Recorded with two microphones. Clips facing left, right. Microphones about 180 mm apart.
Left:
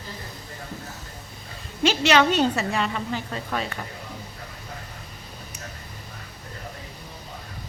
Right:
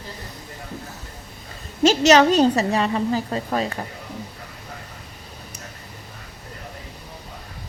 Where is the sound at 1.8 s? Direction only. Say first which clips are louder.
Right 5 dB; 40° right (ahead or behind).